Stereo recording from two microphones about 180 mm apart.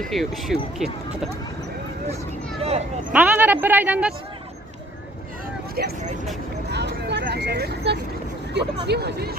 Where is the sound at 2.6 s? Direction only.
35° right (ahead or behind).